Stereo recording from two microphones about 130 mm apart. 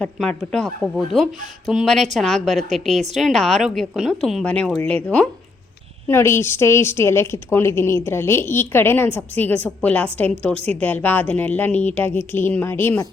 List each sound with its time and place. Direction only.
0.0 s speech: 5° left (ahead or behind)
4.4 s a woman's voice: 10° left (ahead or behind)